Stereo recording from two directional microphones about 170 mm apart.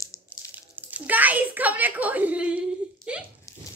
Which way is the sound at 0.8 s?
10° right (ahead or behind).